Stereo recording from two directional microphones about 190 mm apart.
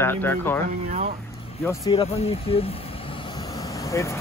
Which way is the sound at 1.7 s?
20° left (ahead or behind).